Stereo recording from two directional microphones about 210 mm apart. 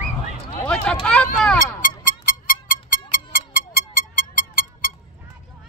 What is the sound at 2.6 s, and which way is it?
Music, 40° left (ahead or behind).